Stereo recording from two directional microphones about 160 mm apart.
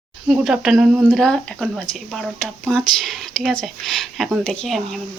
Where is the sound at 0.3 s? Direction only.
5° right (ahead or behind).